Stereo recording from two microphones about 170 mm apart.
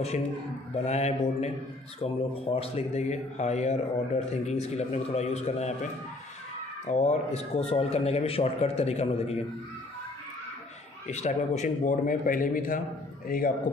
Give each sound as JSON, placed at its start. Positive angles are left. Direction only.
{"t": 0.8, "sound": "speech", "side_deg": 40}
{"t": 6.9, "sound": "speech", "side_deg": 40}
{"t": 11.1, "sound": "a man's voice", "side_deg": 40}